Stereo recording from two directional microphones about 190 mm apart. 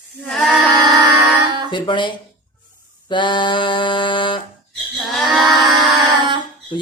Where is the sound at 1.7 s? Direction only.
25° left (ahead or behind).